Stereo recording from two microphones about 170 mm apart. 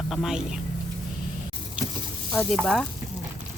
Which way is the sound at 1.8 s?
5° right (ahead or behind).